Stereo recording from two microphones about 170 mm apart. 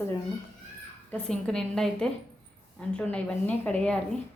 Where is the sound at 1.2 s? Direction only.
5° left (ahead or behind).